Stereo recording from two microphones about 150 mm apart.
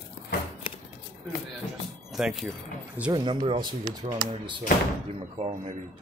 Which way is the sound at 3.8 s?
60° right (ahead or behind).